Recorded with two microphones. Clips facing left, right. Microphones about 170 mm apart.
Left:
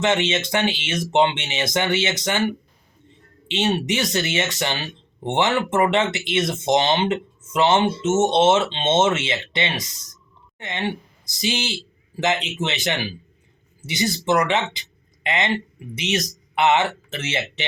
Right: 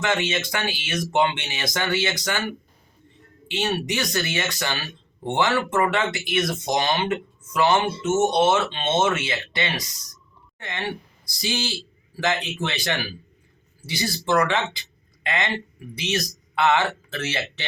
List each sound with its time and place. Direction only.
0.0 s speech: 25° left (ahead or behind)